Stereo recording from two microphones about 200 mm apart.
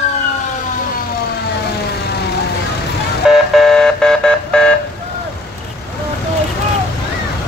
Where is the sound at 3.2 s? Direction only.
Centre (ahead or behind).